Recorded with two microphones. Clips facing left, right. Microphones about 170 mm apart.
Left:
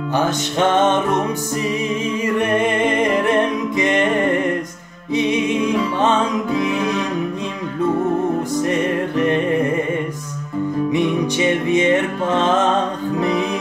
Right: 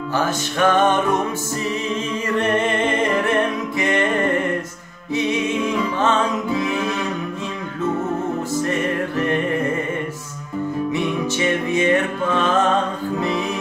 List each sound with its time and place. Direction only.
0.1 s music: 20° left (ahead or behind)
2.2 s music: 10° left (ahead or behind)
5.1 s music: 20° left (ahead or behind)
8.6 s music: 20° left (ahead or behind)
10.9 s music: 15° left (ahead or behind)